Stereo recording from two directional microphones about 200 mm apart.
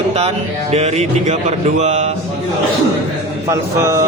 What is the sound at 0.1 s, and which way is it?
Speech, 30° right (ahead or behind).